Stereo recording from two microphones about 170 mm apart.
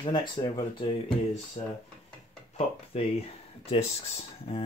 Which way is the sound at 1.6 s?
35° left (ahead or behind).